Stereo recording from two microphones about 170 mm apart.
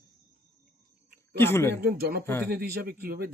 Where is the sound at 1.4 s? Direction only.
15° left (ahead or behind).